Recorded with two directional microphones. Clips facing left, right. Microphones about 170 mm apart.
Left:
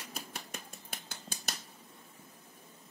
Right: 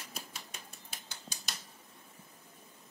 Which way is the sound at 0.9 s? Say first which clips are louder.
Left 4 dB; 50° left (ahead or behind).